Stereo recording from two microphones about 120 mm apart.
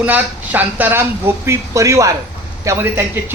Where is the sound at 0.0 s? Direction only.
15° right (ahead or behind).